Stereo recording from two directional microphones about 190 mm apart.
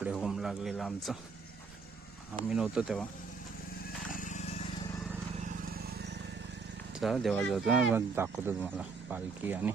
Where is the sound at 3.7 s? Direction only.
50° left (ahead or behind); by 4.8 s 35° left (ahead or behind).